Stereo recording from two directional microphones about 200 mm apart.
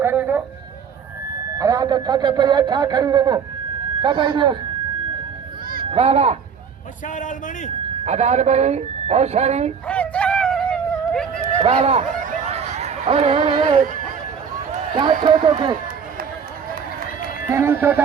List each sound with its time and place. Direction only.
0.0 s a sound: 10° right (ahead or behind)
1.5 s speech: 15° right (ahead or behind)
5.8 s a child's voice: 30° right (ahead or behind)
7.1 s a man's voice: 40° left (ahead or behind)
8.0 s speech: 35° right (ahead or behind)
9.8 s a sound: 5° left (ahead or behind)
11.6 s speech: 30° right (ahead or behind)
12.5 s a sound: 30° right (ahead or behind)
15.2 s speech: 20° right (ahead or behind)
17.5 s speech: 10° right (ahead or behind)